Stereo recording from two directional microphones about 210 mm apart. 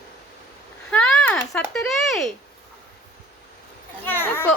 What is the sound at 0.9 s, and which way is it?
Speech, 5° left (ahead or behind).